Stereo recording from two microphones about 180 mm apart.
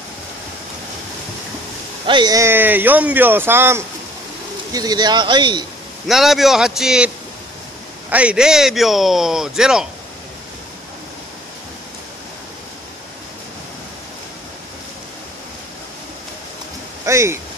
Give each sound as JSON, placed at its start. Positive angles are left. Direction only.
{"t": 2.0, "sound": "speech", "side_deg": -25}
{"t": 6.0, "sound": "speech", "side_deg": 0}
{"t": 8.1, "sound": "speech", "side_deg": -5}
{"t": 17.0, "sound": "speech", "side_deg": -15}